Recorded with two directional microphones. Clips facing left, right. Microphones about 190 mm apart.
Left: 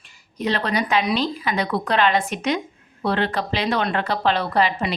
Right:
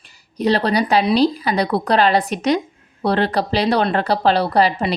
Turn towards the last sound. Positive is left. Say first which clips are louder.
# right 4 dB
turn(degrees=-35)  # may be behind; listen again after turning